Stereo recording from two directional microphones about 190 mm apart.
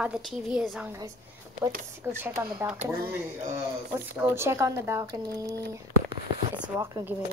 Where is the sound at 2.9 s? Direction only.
50° right (ahead or behind).